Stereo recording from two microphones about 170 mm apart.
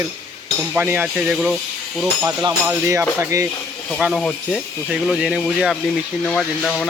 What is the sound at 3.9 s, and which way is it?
Speech, centre (ahead or behind).